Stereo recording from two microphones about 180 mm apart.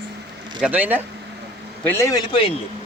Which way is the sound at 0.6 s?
10° right (ahead or behind).